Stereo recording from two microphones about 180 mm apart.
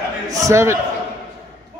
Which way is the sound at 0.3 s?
15° right (ahead or behind).